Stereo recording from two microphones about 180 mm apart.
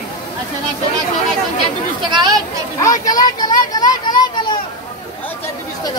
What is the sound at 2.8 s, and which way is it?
A child's voice, 20° left (ahead or behind).